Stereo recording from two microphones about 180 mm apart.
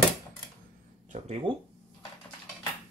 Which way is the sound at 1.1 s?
40° right (ahead or behind).